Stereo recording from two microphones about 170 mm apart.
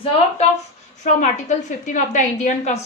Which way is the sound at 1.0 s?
45° left (ahead or behind).